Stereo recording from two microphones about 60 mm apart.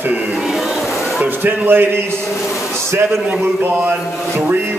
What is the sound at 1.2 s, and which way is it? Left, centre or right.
Speech, right.